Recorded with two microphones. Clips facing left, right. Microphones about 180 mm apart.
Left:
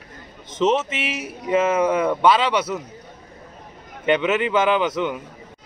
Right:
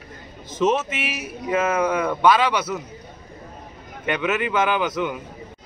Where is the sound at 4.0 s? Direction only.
25° left (ahead or behind).